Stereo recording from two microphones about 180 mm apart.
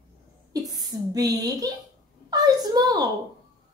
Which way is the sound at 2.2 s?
20° right (ahead or behind).